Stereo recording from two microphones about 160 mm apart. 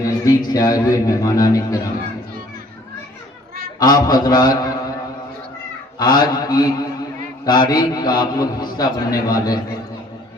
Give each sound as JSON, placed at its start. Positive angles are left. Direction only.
{"t": 0.0, "sound": "a man's voice", "side_deg": 25}
{"t": 3.8, "sound": "a man's voice", "side_deg": 25}
{"t": 6.0, "sound": "a man's voice", "side_deg": 25}